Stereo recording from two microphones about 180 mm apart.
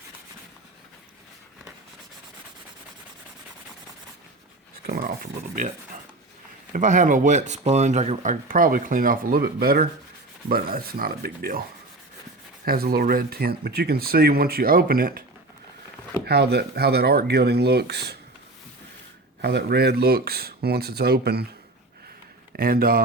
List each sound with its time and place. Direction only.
4.9 s speech: 50° right (ahead or behind)
6.7 s speech: 45° right (ahead or behind)
12.6 s speech: 55° right (ahead or behind)
16.2 s speech: 65° right (ahead or behind)
19.4 s speech: 65° right (ahead or behind)
22.5 s speech: 55° right (ahead or behind)